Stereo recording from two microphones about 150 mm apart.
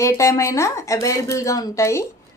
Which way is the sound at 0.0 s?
20° left (ahead or behind).